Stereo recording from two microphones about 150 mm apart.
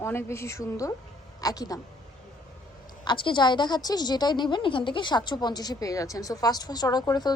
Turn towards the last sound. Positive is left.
turn(degrees=25)  # may be behind; listen again after turning